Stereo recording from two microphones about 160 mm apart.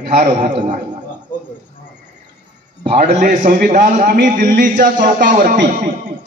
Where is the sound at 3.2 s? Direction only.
60° right (ahead or behind).